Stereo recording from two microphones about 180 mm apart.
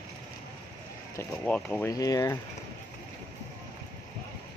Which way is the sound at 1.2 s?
10° left (ahead or behind).